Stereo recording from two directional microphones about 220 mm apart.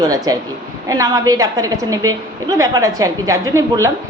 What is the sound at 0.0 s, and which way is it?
A man's voice, 15° right (ahead or behind).